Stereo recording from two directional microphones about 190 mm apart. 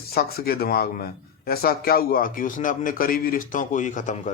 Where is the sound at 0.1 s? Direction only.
55° left (ahead or behind).